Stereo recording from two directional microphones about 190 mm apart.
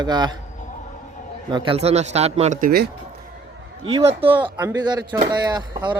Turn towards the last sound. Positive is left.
turn(degrees=-25)  # may be behind; listen again after turning